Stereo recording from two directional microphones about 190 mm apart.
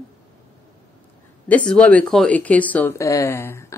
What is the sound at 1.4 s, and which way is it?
Speech, 5° left (ahead or behind).